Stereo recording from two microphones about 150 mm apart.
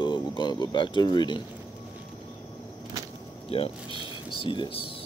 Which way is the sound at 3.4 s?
40° left (ahead or behind).